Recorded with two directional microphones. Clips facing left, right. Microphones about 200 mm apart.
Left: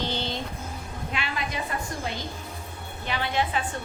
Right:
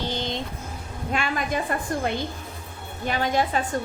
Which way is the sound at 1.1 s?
45° right (ahead or behind).